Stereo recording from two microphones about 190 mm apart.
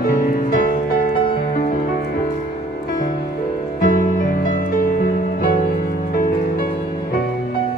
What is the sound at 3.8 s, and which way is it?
Music, 45° left (ahead or behind).